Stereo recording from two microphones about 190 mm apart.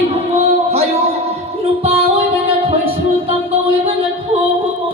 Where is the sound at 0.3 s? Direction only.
35° right (ahead or behind).